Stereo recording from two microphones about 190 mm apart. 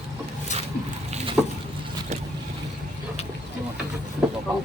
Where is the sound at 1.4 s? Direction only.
15° right (ahead or behind).